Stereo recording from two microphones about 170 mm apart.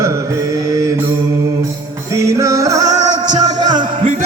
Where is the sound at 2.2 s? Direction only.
15° right (ahead or behind).